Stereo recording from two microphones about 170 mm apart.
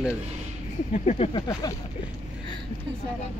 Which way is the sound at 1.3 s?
25° left (ahead or behind).